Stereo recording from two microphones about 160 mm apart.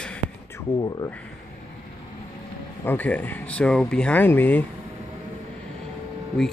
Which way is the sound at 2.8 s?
10° left (ahead or behind).